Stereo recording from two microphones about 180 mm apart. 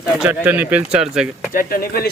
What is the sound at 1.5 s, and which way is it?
Speech, 50° left (ahead or behind).